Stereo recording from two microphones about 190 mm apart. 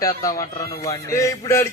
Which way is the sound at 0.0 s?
20° left (ahead or behind).